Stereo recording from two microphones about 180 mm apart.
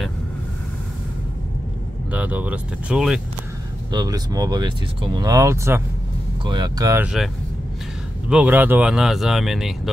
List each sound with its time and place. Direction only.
2.1 s speech: 10° right (ahead or behind)
3.9 s speech: 20° right (ahead or behind)
8.3 s speech: 10° right (ahead or behind)